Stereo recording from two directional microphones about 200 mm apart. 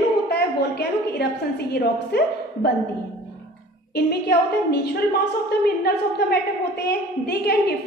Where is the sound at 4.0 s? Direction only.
55° left (ahead or behind).